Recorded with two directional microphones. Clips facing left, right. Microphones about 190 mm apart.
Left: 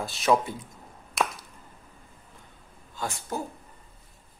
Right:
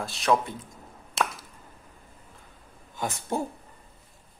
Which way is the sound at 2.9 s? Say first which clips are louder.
Right 3 dB; 20° right (ahead or behind).